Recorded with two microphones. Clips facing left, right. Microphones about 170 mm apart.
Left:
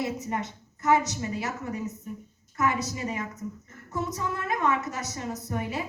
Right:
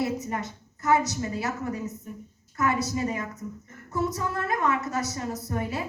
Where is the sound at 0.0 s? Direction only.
25° left (ahead or behind).